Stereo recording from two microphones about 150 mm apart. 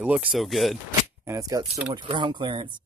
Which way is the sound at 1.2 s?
20° right (ahead or behind).